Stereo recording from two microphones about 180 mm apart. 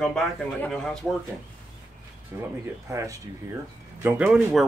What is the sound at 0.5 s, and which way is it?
Speech, 5° left (ahead or behind).